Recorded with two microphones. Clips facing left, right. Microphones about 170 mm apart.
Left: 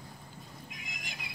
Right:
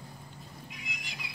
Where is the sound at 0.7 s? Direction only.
45° left (ahead or behind).